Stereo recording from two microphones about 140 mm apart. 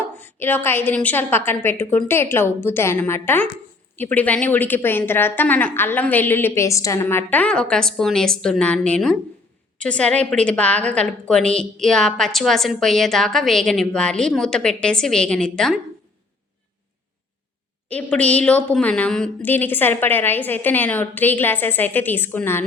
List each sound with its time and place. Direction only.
0.2 s a woman's voice: 15° left (ahead or behind)
17.8 s a woman's voice: 10° left (ahead or behind)